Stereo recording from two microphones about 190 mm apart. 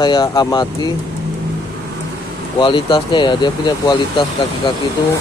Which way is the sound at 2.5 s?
25° left (ahead or behind).